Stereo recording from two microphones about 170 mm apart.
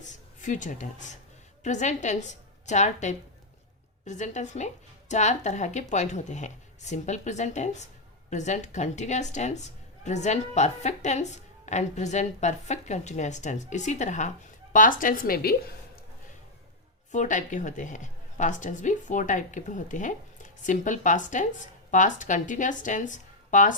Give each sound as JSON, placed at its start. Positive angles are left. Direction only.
{"t": 0.0, "sound": "a sound", "side_deg": 45}
{"t": 1.6, "sound": "a woman's voice", "side_deg": 45}
{"t": 17.1, "sound": "a woman's voice", "side_deg": 45}